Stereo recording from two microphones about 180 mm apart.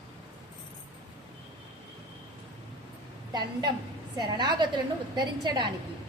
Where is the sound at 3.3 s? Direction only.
20° right (ahead or behind).